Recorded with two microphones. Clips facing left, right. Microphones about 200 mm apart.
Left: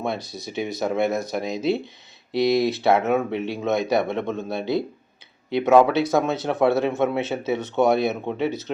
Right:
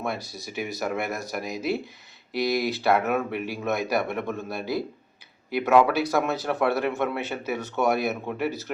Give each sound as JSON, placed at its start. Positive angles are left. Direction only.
{"t": 0.5, "sound": "speech", "side_deg": 25}